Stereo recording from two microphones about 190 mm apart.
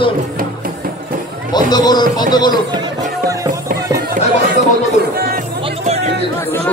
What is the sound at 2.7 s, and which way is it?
Speech, 20° right (ahead or behind).